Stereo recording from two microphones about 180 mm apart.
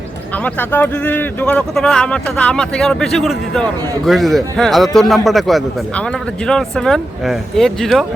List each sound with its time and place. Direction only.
0.4 s speech: 10° left (ahead or behind)